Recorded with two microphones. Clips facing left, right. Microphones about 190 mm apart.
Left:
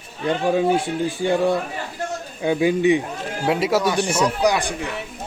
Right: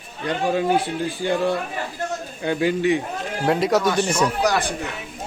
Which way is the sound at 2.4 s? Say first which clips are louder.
Left 3 dB; 15° left (ahead or behind).